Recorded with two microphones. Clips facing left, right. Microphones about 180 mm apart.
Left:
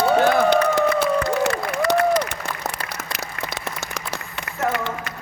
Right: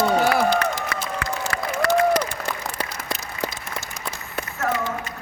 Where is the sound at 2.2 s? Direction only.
70° left (ahead or behind).